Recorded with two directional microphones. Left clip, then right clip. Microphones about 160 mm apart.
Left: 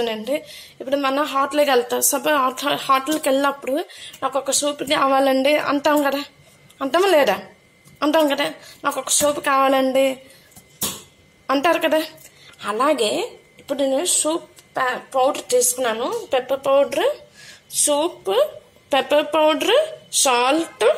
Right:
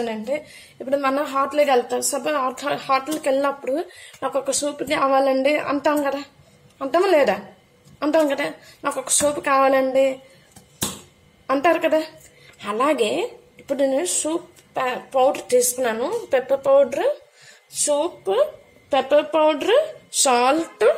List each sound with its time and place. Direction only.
0.0 s speech: centre (ahead or behind)
11.4 s speech: centre (ahead or behind)